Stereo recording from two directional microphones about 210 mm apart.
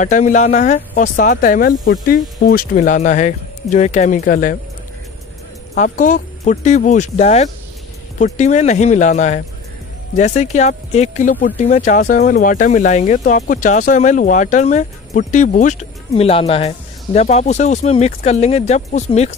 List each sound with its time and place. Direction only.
0.0 s speech: 35° left (ahead or behind)
5.8 s speech: 40° left (ahead or behind)